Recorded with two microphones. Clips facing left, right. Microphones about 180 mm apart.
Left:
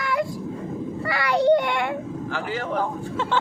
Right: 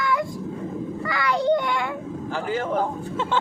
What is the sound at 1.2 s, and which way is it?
Speech, 60° left (ahead or behind).